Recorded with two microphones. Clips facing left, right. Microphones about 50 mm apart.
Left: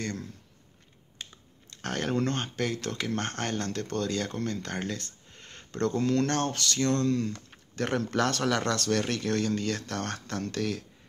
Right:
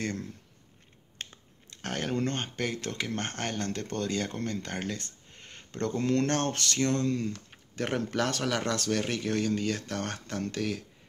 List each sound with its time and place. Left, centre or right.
0.0 s speech: right
1.2 s finger snapping: right
1.8 s speech: centre
5.4 s a sound: centre
5.9 s speech: right